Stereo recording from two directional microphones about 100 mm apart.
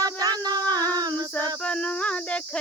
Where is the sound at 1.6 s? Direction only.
10° left (ahead or behind).